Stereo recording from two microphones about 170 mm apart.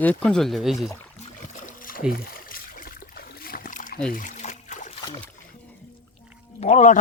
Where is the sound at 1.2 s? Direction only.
45° left (ahead or behind).